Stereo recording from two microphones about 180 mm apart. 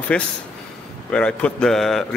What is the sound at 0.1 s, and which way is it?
A man's voice, 5° left (ahead or behind).